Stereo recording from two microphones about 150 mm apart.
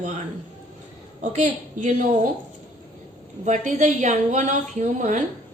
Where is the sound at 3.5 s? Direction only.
55° right (ahead or behind).